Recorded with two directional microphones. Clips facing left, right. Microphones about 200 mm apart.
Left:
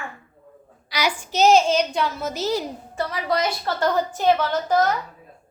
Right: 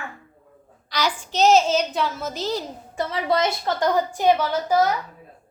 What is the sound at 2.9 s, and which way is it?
A woman's voice, 25° right (ahead or behind).